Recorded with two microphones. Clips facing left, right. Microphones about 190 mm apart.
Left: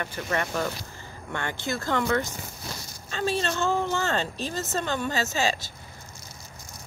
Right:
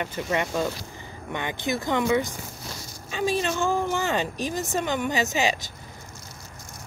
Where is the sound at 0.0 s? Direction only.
15° right (ahead or behind).